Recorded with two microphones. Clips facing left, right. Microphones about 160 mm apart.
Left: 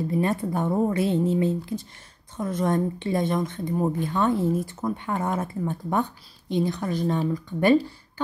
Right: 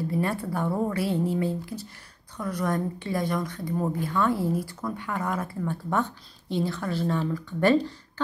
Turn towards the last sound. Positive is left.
turn(degrees=15)  # may be behind; listen again after turning